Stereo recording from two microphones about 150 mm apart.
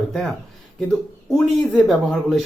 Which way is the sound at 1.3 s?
Centre (ahead or behind).